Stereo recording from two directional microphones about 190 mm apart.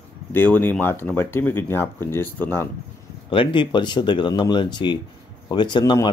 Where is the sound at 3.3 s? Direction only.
25° left (ahead or behind).